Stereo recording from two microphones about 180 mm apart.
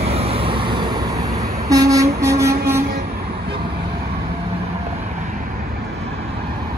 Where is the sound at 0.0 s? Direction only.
35° right (ahead or behind); by 2.8 s 15° right (ahead or behind).